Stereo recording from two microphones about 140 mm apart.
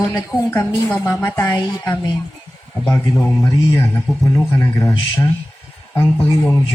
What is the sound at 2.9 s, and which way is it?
A man's voice, 20° left (ahead or behind).